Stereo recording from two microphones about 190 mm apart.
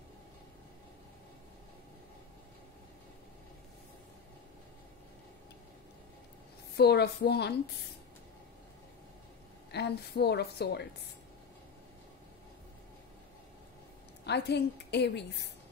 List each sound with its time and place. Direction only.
6.7 s a woman's voice: 60° left (ahead or behind)
9.7 s a woman's voice: 60° left (ahead or behind)
14.2 s a woman's voice: 60° left (ahead or behind)